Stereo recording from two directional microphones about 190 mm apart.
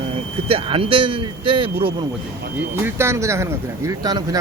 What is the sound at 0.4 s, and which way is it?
Speech, 30° right (ahead or behind).